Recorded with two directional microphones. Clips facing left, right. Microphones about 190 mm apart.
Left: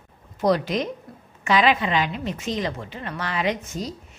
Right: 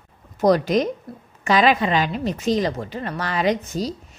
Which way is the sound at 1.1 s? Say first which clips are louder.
Right 6 dB; 35° right (ahead or behind).